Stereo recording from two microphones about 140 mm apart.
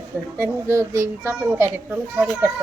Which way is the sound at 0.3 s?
20° right (ahead or behind).